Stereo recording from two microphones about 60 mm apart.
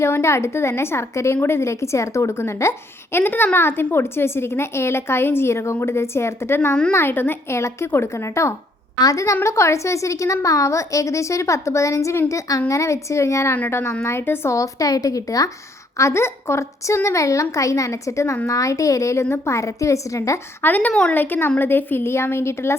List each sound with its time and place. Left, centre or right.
0.0 s a woman's voice: left
3.2 s a woman's voice: left
9.0 s a woman's voice: left
12.3 s a woman's voice: left
14.5 s a woman's voice: left
16.0 s a woman's voice: left
19.2 s a woman's voice: left
20.6 s a woman's voice: left